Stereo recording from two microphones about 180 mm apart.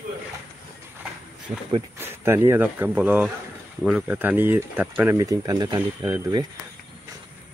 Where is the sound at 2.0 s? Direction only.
15° right (ahead or behind).